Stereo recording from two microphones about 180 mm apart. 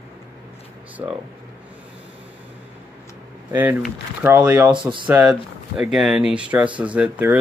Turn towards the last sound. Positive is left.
turn(degrees=-10)  # may be behind; listen again after turning